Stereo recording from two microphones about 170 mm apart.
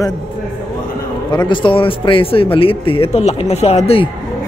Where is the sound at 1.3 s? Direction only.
25° left (ahead or behind).